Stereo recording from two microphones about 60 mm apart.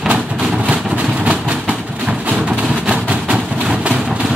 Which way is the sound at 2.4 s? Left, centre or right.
Centre.